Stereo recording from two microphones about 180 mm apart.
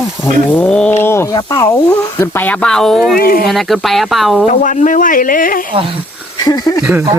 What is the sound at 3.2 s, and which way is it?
Speech, 55° left (ahead or behind).